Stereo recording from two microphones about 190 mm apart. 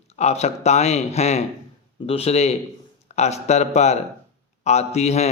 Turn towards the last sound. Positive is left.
turn(degrees=35)  # may be behind; listen again after turning